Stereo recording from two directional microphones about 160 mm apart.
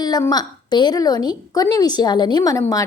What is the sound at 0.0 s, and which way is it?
A woman's voice, 25° left (ahead or behind).